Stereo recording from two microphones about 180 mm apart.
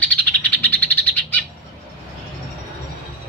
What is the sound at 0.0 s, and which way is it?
Bird, 10° left (ahead or behind).